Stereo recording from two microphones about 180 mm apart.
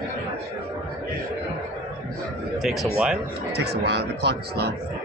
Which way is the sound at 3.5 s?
65° right (ahead or behind).